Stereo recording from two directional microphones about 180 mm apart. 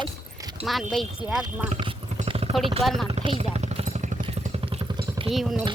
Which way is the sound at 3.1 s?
30° right (ahead or behind).